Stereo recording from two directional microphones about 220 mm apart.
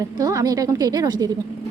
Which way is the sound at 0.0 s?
15° right (ahead or behind).